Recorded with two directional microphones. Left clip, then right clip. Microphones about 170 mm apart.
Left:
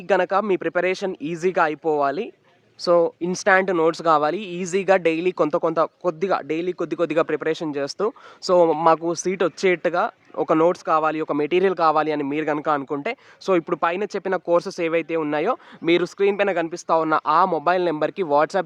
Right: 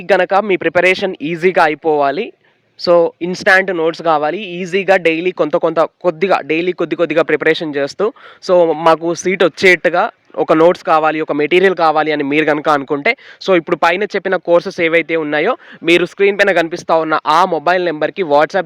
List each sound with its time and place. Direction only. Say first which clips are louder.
0.1 s speech: right 7 dB; 20° right (ahead or behind)
3.7 s speech: right 4 dB; 5° right (ahead or behind)
8.8 s speech: right 6 dB; 20° right (ahead or behind)
12.3 s speech: right 9 dB; 35° right (ahead or behind); by 18.6 s 15° right (ahead or behind)